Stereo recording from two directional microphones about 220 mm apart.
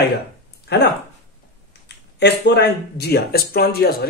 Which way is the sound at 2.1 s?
50° left (ahead or behind).